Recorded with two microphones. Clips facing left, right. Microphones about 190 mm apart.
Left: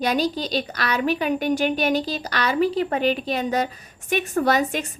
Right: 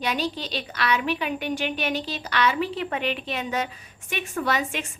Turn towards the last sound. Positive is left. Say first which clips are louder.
# left 6 dB
turn(degrees=40)  # may be behind; listen again after turning